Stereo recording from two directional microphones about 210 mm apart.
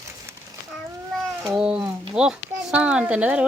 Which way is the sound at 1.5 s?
5° right (ahead or behind).